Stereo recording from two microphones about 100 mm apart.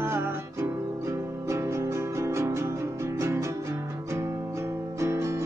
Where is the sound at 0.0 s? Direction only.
25° right (ahead or behind).